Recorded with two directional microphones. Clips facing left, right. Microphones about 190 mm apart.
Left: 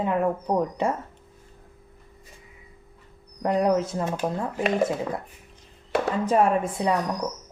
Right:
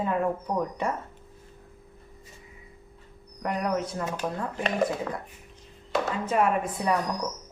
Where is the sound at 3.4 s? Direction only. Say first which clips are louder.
Left 6 dB; 30° left (ahead or behind).